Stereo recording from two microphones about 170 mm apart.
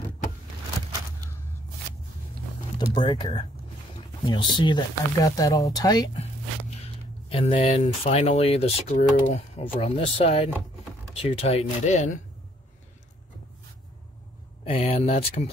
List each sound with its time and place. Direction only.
2.9 s speech: 30° left (ahead or behind)
7.2 s speech: 35° left (ahead or behind)
14.6 s speech: 35° left (ahead or behind)